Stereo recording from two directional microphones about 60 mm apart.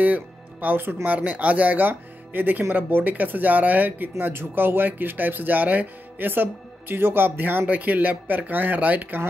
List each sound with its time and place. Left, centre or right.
0.0 s speech: right
4.2 s speech: right